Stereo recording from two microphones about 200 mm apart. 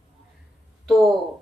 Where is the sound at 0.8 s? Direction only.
Centre (ahead or behind).